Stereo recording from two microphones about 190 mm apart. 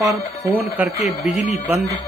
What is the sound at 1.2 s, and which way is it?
Speech, 35° left (ahead or behind).